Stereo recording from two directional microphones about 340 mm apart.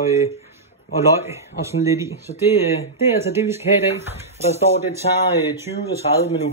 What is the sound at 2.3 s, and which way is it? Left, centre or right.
Speech, left.